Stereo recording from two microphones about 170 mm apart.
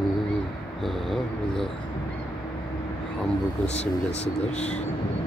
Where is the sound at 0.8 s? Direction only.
Centre (ahead or behind).